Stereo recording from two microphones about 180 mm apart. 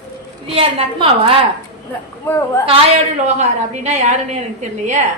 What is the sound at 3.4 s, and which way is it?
A woman's voice, 40° right (ahead or behind).